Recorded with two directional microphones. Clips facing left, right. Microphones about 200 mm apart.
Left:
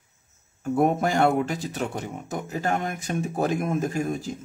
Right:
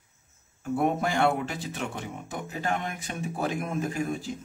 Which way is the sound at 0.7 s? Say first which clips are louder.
Left 4 dB; 45° left (ahead or behind).